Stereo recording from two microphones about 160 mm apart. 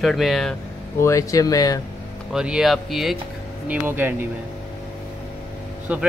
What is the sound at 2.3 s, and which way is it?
Speech, 5° right (ahead or behind).